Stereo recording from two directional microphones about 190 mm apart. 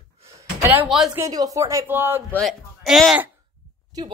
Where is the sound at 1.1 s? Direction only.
20° right (ahead or behind).